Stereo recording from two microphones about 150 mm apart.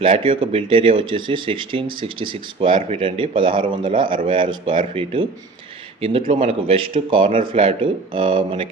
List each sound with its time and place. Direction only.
0.0 s speech: 40° right (ahead or behind)